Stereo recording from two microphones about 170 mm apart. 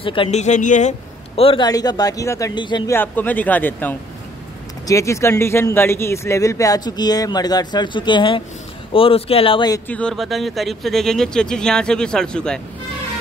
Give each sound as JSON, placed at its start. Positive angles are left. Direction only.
{"t": 0.0, "sound": "a man's voice", "side_deg": 30}
{"t": 1.7, "sound": "speech", "side_deg": 20}
{"t": 2.9, "sound": "speech", "side_deg": 10}
{"t": 9.8, "sound": "speech", "side_deg": 5}